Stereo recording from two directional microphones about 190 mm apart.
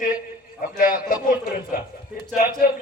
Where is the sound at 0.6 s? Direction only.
45° left (ahead or behind).